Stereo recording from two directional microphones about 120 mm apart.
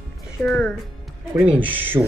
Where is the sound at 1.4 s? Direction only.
10° right (ahead or behind).